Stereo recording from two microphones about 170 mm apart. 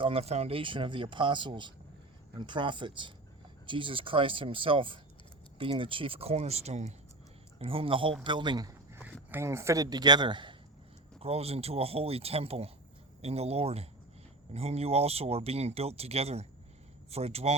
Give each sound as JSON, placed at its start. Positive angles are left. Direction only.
{"t": 0.0, "sound": "speech", "side_deg": -35}